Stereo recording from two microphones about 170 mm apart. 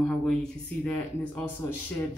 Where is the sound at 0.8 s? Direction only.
10° left (ahead or behind).